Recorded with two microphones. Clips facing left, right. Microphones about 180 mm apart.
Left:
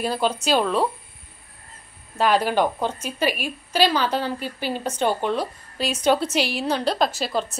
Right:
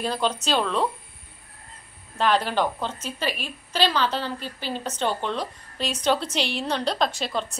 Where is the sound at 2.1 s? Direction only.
10° left (ahead or behind).